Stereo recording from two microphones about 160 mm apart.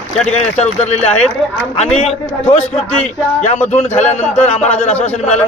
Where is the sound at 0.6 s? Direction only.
40° left (ahead or behind).